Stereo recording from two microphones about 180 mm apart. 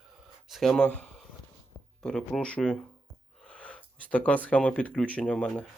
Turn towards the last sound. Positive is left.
turn(degrees=0)  # may be behind; listen again after turning